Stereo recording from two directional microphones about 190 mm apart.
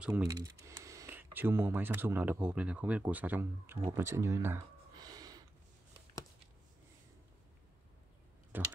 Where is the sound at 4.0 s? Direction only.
15° right (ahead or behind).